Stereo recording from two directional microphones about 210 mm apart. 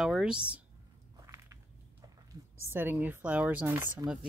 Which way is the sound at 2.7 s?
10° right (ahead or behind).